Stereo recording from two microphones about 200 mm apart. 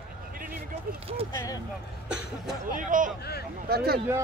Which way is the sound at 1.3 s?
15° left (ahead or behind).